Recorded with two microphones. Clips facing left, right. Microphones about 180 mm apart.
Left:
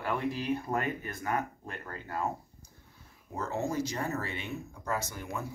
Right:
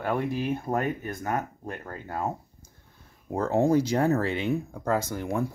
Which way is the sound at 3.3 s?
55° right (ahead or behind).